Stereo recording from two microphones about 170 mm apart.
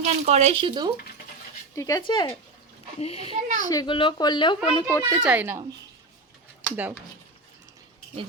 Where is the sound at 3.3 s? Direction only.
45° right (ahead or behind).